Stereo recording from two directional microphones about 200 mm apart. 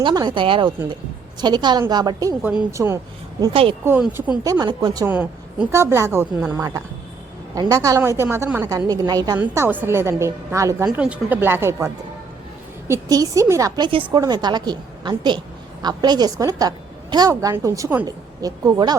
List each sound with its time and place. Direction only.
0.0 s a woman's voice: 20° right (ahead or behind)
2.4 s a woman's voice: 5° right (ahead or behind)
3.4 s a woman's voice: 25° right (ahead or behind)
3.8 s a woman's voice: 5° right (ahead or behind)
4.4 s a woman's voice: 20° right (ahead or behind)
5.0 s a woman's voice: 10° right (ahead or behind)
9.4 s a woman's voice: 10° right (ahead or behind)
12.9 s a woman's voice: 15° right (ahead or behind)